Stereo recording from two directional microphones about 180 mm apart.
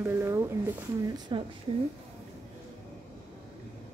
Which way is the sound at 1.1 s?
25° right (ahead or behind).